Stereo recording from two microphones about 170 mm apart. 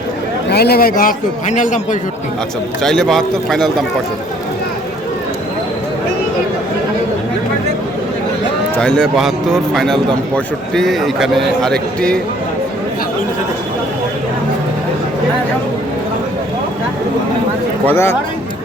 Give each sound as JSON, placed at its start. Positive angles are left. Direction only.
{"t": 0.5, "sound": "a man's voice", "side_deg": 70}
{"t": 2.8, "sound": "a man's voice", "side_deg": 5}
{"t": 8.7, "sound": "a man's voice", "side_deg": 5}
{"t": 17.8, "sound": "speech", "side_deg": 15}